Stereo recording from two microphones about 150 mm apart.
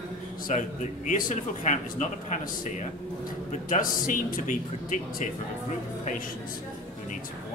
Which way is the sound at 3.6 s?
60° left (ahead or behind).